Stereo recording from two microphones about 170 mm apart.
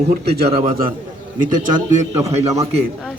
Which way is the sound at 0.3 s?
70° right (ahead or behind).